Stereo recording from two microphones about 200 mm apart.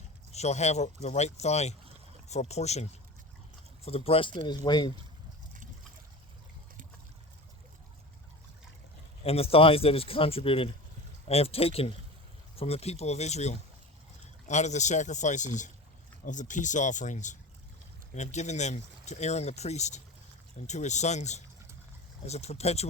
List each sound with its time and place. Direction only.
0.3 s speech: 35° left (ahead or behind)
9.2 s speech: 30° left (ahead or behind)